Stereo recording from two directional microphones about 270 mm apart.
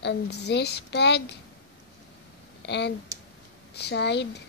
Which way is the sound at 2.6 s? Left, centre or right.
Left.